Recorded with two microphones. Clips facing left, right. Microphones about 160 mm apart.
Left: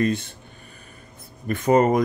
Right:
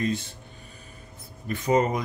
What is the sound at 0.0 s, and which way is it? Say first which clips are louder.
Speech: left 5 dB; 60° left (ahead or behind).